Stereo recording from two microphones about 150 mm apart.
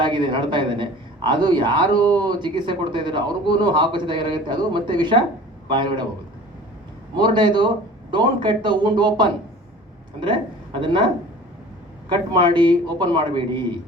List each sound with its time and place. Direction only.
0.0 s a man's voice: 30° right (ahead or behind)
7.2 s a man's voice: 30° right (ahead or behind)
12.3 s a man's voice: 30° right (ahead or behind)